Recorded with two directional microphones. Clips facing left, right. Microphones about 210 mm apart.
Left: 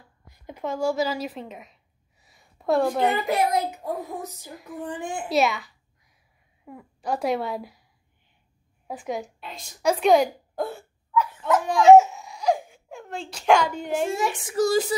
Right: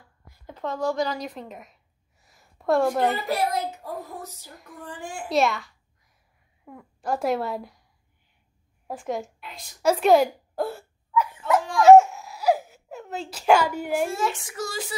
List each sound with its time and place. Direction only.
0.3 s a sound: 15° left (ahead or behind)
3.3 s a child's voice: 15° left (ahead or behind)
5.3 s a woman's voice: centre (ahead or behind)
8.8 s a woman's voice: centre (ahead or behind)
11.9 s a sound: centre (ahead or behind)
14.0 s a child's voice: 15° left (ahead or behind)
14.5 s speech: 35° left (ahead or behind)